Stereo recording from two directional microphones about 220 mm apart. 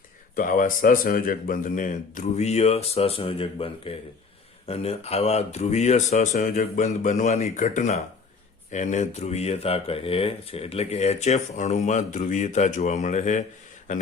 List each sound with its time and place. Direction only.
0.3 s speech: 40° left (ahead or behind)